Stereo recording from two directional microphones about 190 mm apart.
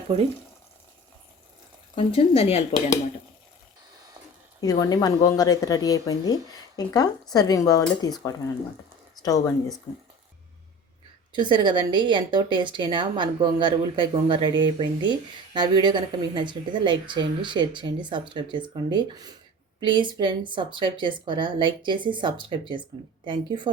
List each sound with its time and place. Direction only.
2.0 s speech: 30° left (ahead or behind)
4.6 s speech: 20° left (ahead or behind)
9.2 s speech: 20° left (ahead or behind)
11.3 s a woman's voice: 25° right (ahead or behind)